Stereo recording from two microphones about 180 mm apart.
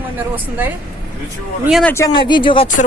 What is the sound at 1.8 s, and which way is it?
Speech, 15° left (ahead or behind).